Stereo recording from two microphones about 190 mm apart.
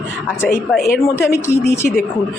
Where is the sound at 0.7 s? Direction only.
55° left (ahead or behind).